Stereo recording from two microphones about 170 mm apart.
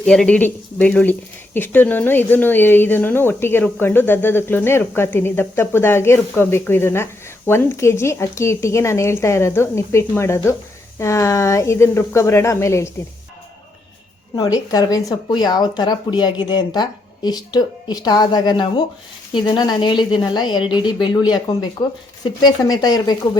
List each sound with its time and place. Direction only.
0.0 s speech: 5° left (ahead or behind)
14.3 s a woman's voice: 20° left (ahead or behind)